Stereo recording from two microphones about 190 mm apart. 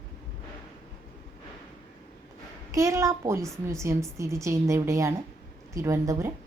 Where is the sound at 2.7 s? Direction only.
15° right (ahead or behind).